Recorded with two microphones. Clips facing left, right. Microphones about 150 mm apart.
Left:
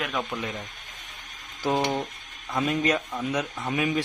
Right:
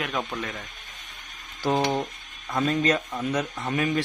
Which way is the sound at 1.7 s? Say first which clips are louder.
Right 1 dB; centre (ahead or behind).